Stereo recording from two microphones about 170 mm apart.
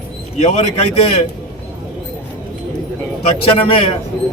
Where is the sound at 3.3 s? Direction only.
35° left (ahead or behind).